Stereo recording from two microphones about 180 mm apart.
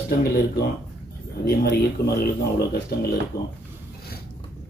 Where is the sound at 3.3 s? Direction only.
20° left (ahead or behind).